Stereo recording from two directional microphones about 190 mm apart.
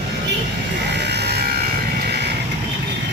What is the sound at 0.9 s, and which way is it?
Sheep, 60° right (ahead or behind).